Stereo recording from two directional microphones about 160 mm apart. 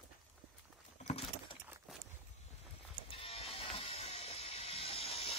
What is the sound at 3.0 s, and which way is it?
Music, 35° left (ahead or behind).